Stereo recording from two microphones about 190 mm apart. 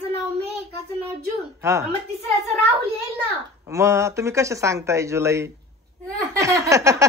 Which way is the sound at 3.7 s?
15° right (ahead or behind).